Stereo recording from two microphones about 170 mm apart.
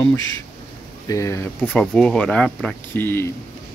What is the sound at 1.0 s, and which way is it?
Speech, 20° left (ahead or behind).